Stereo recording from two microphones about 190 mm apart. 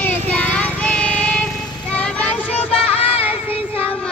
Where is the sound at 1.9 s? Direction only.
5° left (ahead or behind).